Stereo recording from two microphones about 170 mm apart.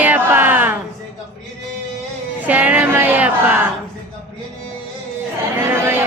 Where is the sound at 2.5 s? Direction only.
10° right (ahead or behind).